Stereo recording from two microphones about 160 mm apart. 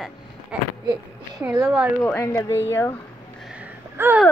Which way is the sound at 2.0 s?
15° left (ahead or behind).